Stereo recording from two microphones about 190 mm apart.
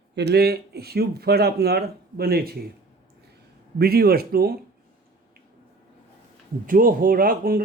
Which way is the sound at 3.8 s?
55° right (ahead or behind).